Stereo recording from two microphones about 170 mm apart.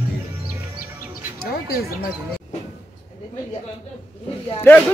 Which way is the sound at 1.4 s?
65° left (ahead or behind).